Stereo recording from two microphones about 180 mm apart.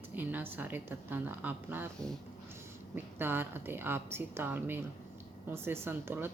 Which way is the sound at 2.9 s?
10° right (ahead or behind).